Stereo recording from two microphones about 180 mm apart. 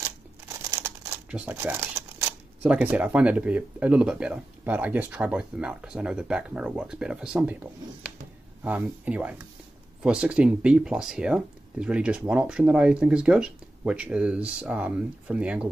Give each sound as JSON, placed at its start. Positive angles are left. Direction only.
{"t": 0.7, "sound": "crumpling", "side_deg": -15}
{"t": 2.6, "sound": "speech", "side_deg": -5}